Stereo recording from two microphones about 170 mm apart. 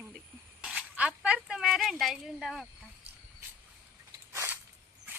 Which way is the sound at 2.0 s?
Centre (ahead or behind).